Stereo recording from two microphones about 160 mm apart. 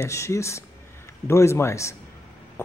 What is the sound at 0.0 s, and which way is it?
Speech, 20° left (ahead or behind).